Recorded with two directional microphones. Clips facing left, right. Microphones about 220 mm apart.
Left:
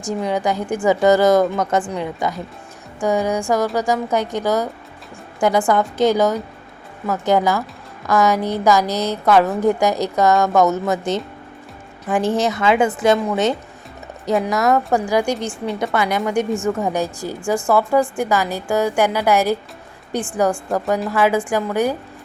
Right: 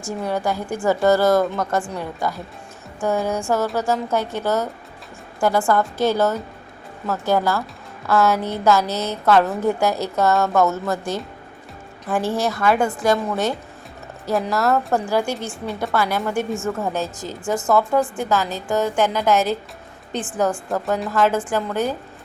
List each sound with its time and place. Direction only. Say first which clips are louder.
0.0 s a woman's voice: left 3 dB; 15° left (ahead or behind)